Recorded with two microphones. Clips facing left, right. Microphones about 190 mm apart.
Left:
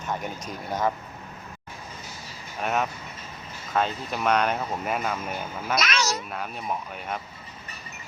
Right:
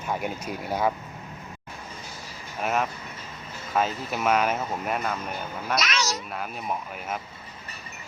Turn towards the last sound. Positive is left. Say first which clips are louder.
# even
turn(degrees=0)  # may be behind; listen again after turning